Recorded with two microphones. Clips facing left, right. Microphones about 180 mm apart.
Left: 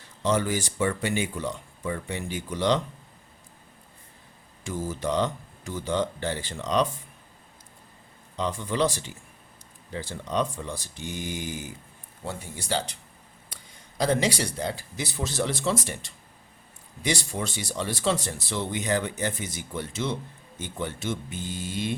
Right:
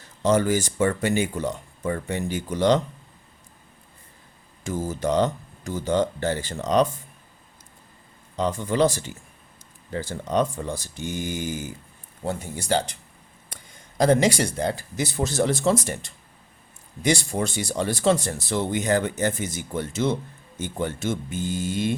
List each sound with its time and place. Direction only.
0.2 s speech: 45° right (ahead or behind)
4.6 s speech: 45° right (ahead or behind)
8.4 s speech: 45° right (ahead or behind)
14.0 s speech: 50° right (ahead or behind)